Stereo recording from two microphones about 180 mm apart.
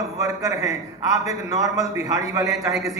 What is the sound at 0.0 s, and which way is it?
A man's voice, 20° right (ahead or behind).